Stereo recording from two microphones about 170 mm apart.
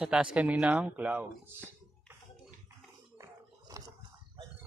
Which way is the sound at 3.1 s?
20° right (ahead or behind).